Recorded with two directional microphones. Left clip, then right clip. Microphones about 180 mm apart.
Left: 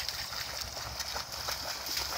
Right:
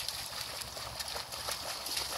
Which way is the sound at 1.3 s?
30° right (ahead or behind).